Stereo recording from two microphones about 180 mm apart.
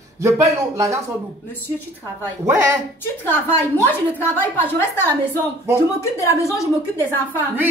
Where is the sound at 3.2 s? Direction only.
10° left (ahead or behind).